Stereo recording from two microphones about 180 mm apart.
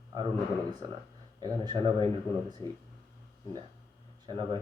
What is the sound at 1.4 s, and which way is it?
Speech, 25° right (ahead or behind).